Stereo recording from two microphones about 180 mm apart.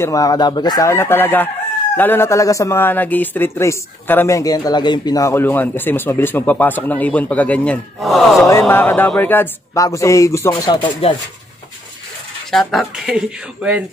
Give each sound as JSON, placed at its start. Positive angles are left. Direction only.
{"t": 0.0, "sound": "speech", "side_deg": 20}
{"t": 8.5, "sound": "speech", "side_deg": 15}
{"t": 12.4, "sound": "speech", "side_deg": 0}